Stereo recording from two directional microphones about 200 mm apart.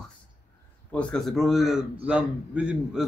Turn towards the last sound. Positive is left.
turn(degrees=-5)  # may be behind; listen again after turning